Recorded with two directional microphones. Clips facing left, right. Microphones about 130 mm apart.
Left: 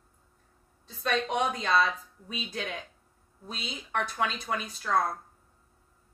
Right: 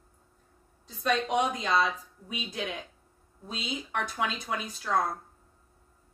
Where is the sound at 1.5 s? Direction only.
15° right (ahead or behind).